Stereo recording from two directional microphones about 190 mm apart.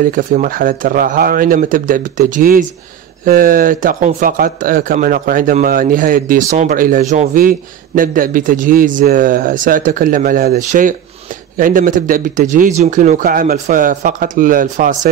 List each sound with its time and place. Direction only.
0.0 s speech: 45° right (ahead or behind)